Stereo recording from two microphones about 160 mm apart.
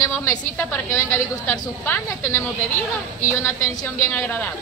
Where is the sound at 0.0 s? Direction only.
20° left (ahead or behind).